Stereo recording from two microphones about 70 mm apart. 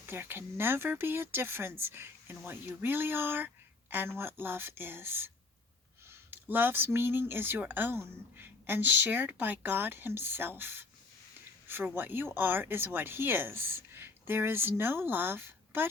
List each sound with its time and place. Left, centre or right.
0.0 s a woman's voice: right